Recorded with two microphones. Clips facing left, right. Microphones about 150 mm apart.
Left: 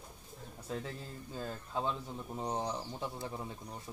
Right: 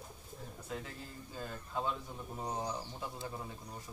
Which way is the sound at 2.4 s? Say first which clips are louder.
Left 2 dB; 30° left (ahead or behind).